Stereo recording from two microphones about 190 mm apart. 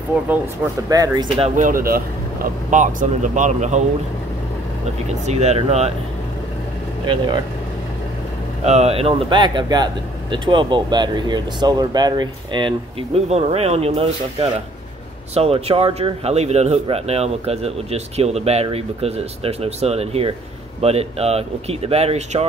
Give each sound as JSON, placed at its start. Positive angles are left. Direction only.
{"t": 0.8, "sound": "speech", "side_deg": -20}
{"t": 1.6, "sound": "speech", "side_deg": -45}
{"t": 5.2, "sound": "speech", "side_deg": -35}
{"t": 8.6, "sound": "speech", "side_deg": -35}